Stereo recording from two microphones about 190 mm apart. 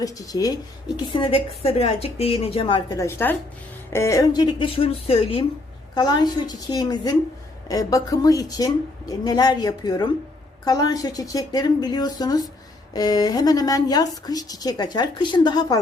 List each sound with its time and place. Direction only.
0.0 s a woman's voice: 20° left (ahead or behind)